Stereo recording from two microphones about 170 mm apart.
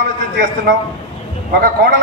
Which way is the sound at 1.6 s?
60° right (ahead or behind).